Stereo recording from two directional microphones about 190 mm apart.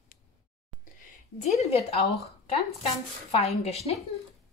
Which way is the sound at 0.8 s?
40° left (ahead or behind).